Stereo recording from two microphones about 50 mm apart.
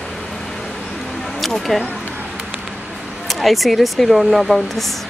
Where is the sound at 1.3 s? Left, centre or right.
Centre.